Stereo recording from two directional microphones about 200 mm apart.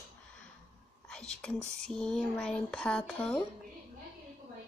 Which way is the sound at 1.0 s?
5° left (ahead or behind).